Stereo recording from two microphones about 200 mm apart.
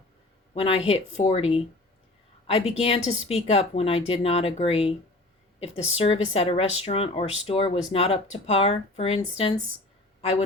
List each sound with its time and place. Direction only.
0.5 s a woman's voice: 30° left (ahead or behind)